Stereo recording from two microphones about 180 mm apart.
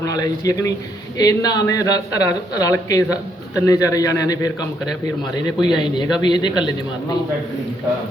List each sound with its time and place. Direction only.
0.1 s a man's voice: 20° left (ahead or behind)
5.6 s a man's voice: 25° left (ahead or behind)